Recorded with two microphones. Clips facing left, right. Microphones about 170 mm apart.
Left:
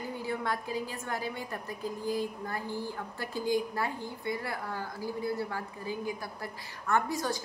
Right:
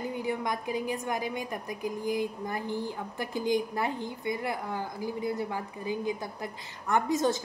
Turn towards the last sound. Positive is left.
turn(degrees=-20)  # may be behind; listen again after turning